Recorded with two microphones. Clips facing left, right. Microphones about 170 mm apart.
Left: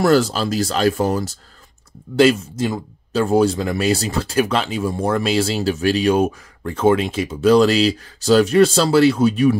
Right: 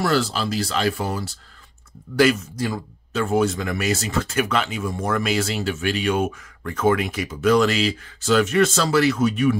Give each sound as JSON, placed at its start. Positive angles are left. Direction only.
{"t": 0.0, "sound": "speech", "side_deg": 45}
{"t": 2.1, "sound": "speech", "side_deg": 25}
{"t": 3.1, "sound": "speech", "side_deg": 35}